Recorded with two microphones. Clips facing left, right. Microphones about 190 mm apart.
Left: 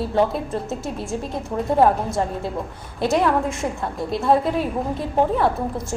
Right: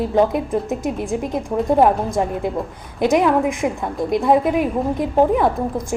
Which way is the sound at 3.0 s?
15° right (ahead or behind).